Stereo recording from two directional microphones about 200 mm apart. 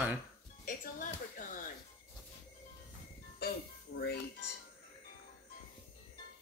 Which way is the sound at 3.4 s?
55° left (ahead or behind).